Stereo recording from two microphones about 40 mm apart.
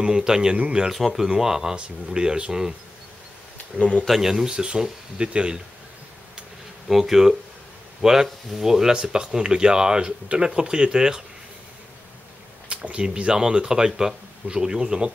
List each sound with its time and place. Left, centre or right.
0.0 s speech: centre
0.9 s speech: centre
4.1 s speech: centre
6.9 s speech: centre
12.6 s a sound: right
13.0 s speech: right